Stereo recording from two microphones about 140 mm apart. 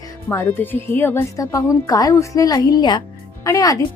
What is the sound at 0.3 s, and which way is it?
Speech, 15° left (ahead or behind).